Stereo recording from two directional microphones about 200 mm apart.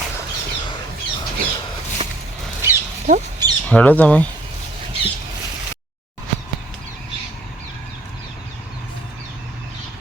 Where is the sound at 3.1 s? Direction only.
40° right (ahead or behind).